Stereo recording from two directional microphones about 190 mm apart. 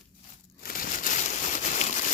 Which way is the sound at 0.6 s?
50° left (ahead or behind).